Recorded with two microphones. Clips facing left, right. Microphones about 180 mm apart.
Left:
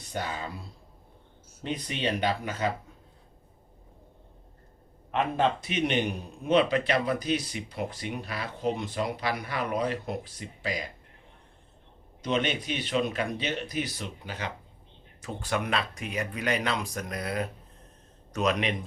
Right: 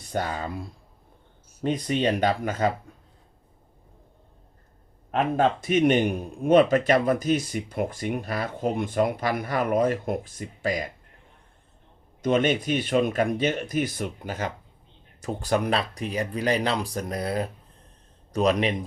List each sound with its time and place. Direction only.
0.1 s speech: 45° right (ahead or behind)
1.6 s speech: 45° right (ahead or behind)
5.1 s speech: 50° right (ahead or behind)
12.2 s speech: 45° right (ahead or behind)